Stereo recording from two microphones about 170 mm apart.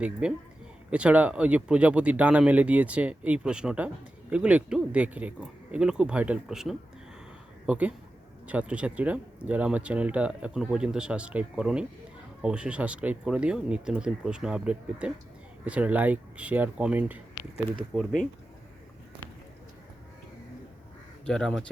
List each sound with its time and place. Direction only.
0.0 s speech: 5° right (ahead or behind)
21.2 s speech: 5° left (ahead or behind)